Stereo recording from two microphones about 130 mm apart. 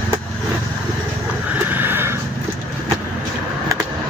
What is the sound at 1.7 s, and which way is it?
Neigh, 15° right (ahead or behind).